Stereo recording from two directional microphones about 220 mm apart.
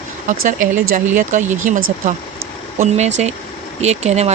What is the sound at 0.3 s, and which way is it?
Speech, 35° right (ahead or behind).